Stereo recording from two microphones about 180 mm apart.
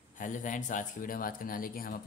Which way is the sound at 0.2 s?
45° left (ahead or behind).